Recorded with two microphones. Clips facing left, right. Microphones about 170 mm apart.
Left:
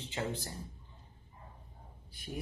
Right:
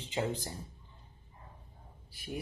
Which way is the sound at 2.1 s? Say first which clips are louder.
Right 3 dB; 5° right (ahead or behind).